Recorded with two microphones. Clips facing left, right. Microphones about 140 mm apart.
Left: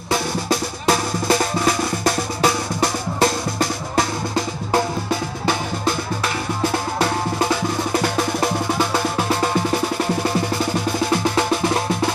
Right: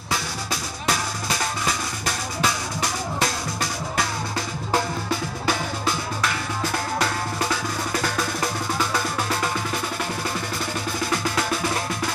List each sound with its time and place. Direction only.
2.4 s drum: 55° left (ahead or behind)
8.2 s music: 25° left (ahead or behind)